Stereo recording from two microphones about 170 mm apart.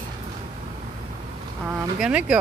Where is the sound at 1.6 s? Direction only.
5° right (ahead or behind).